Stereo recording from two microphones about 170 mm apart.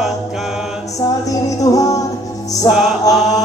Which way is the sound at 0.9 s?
20° left (ahead or behind).